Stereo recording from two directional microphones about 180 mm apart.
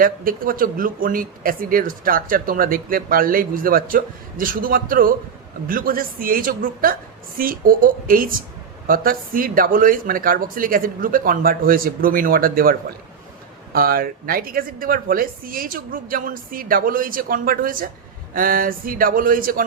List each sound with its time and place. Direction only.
0.0 s speech: 50° right (ahead or behind)
13.7 s speech: 55° right (ahead or behind)